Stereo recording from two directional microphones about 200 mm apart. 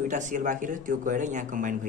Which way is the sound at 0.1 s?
40° right (ahead or behind).